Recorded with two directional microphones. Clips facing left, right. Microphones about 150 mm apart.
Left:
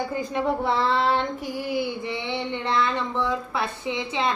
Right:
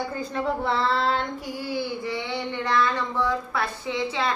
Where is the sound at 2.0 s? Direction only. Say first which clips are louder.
Even; 25° left (ahead or behind).